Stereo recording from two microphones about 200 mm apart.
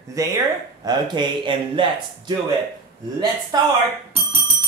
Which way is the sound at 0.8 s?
20° right (ahead or behind).